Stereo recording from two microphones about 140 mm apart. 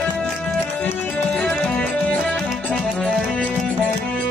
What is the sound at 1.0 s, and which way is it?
Music, 10° left (ahead or behind).